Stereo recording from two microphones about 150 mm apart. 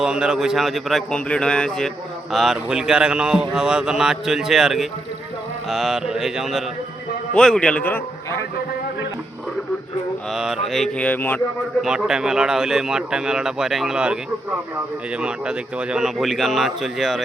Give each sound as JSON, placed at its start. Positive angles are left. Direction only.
{"t": 0.0, "sound": "a man's voice", "side_deg": -5}
{"t": 10.3, "sound": "speech", "side_deg": -5}
{"t": 11.8, "sound": "speech", "side_deg": -5}